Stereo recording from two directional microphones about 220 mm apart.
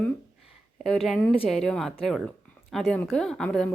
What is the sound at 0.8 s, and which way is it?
A woman's voice, centre (ahead or behind).